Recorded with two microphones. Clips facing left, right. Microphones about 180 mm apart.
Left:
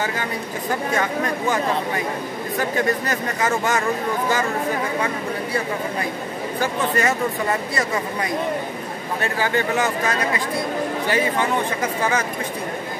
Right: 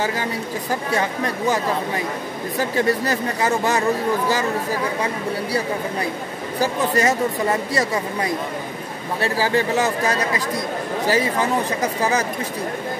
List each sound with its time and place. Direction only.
0.9 s speech: 35° right (ahead or behind)
3.1 s speech: 35° right (ahead or behind)
6.6 s speech: 40° right (ahead or behind)
9.2 s speech: 35° right (ahead or behind)